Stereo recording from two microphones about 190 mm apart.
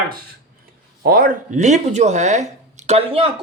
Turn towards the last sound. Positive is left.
turn(degrees=-30)  # may be behind; listen again after turning